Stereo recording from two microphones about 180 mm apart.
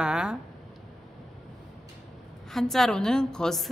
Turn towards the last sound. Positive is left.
turn(degrees=5)  # may be behind; listen again after turning